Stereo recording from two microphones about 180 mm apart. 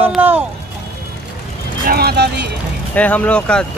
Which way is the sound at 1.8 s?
60° right (ahead or behind).